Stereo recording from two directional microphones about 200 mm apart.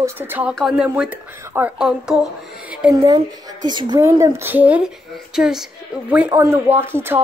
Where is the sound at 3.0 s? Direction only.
20° right (ahead or behind).